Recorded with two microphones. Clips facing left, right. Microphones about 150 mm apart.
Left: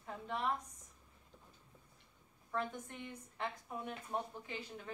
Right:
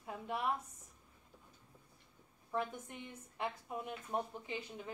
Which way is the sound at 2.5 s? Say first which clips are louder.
Right 1 dB; 15° right (ahead or behind).